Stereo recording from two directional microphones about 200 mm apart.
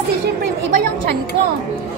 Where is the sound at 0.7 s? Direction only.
50° right (ahead or behind).